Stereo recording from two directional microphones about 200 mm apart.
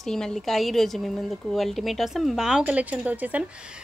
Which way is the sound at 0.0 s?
5° left (ahead or behind).